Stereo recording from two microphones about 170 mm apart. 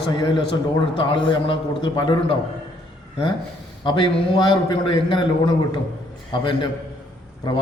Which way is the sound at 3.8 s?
30° left (ahead or behind).